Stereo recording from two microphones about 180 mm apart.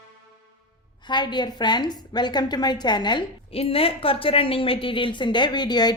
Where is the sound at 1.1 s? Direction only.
25° left (ahead or behind).